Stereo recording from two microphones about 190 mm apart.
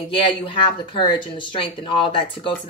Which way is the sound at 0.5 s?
30° left (ahead or behind).